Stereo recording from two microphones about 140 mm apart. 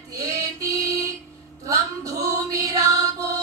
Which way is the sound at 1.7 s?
25° right (ahead or behind).